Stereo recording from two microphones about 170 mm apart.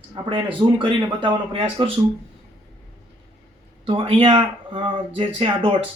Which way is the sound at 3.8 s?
30° right (ahead or behind).